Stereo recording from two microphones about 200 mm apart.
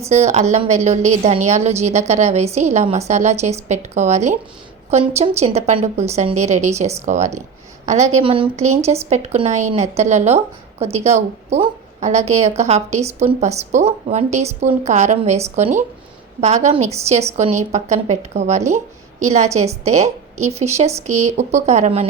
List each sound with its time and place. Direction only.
0.0 s speech: 35° right (ahead or behind)